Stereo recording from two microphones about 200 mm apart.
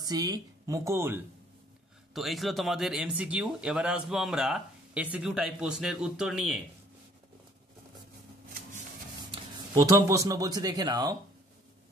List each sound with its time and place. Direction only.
0.0 s speech: 20° right (ahead or behind)
2.1 s speech: centre (ahead or behind)
9.8 s speech: 15° right (ahead or behind)